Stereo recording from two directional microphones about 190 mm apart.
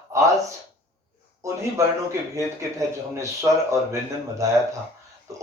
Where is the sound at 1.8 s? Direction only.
15° right (ahead or behind).